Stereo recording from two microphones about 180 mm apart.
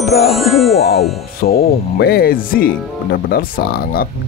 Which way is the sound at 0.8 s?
60° left (ahead or behind).